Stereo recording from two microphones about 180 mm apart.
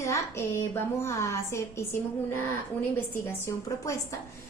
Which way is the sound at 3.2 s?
15° left (ahead or behind).